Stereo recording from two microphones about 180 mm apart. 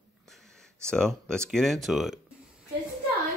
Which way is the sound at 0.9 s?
5° left (ahead or behind).